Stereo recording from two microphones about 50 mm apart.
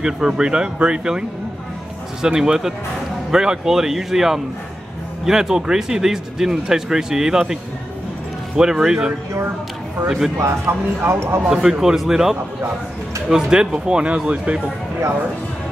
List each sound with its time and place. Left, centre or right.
0.0 s speech: centre
2.2 s speech: centre
8.5 s speech: centre
10.4 s speech: right
11.8 s speech: centre